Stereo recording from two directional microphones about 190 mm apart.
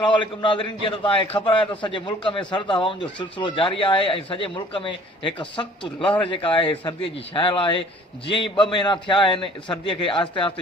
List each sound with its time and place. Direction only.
0.0 s speech: 25° left (ahead or behind)